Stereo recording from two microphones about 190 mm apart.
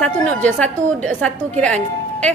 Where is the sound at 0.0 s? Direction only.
5° left (ahead or behind).